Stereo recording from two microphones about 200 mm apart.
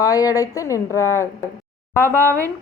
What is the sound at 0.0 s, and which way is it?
Speech, 15° left (ahead or behind).